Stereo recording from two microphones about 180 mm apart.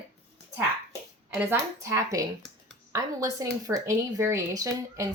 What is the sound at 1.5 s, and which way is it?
A woman's voice, 15° right (ahead or behind).